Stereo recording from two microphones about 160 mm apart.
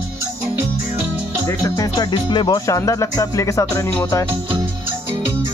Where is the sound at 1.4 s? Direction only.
20° left (ahead or behind).